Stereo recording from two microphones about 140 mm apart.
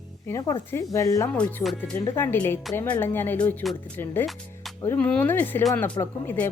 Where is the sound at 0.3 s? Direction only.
25° left (ahead or behind).